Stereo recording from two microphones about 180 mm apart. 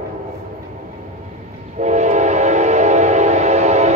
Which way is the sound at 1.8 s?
40° right (ahead or behind).